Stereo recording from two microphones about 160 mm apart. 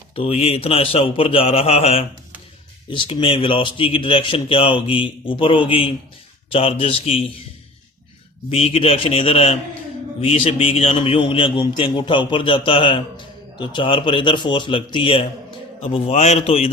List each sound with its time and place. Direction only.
0.2 s a man's voice: 40° left (ahead or behind)
8.4 s a man's voice: 40° left (ahead or behind)